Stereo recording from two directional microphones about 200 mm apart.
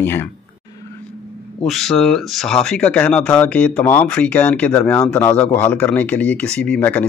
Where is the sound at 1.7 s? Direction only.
Centre (ahead or behind).